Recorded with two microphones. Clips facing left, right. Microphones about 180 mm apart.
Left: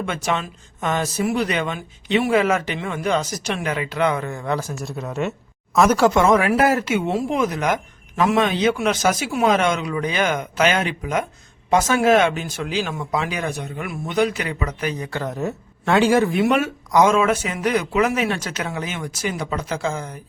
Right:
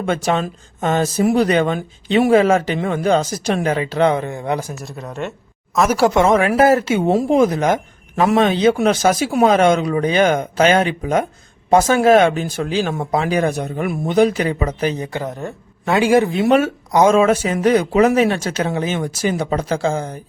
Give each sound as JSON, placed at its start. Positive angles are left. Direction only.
{"t": 0.0, "sound": "speech", "side_deg": -35}
{"t": 4.3, "sound": "speech", "side_deg": -20}
{"t": 4.7, "sound": "speech", "side_deg": 0}
{"t": 6.0, "sound": "speech", "side_deg": -20}
{"t": 15.3, "sound": "speech", "side_deg": 0}
{"t": 15.9, "sound": "speech", "side_deg": -10}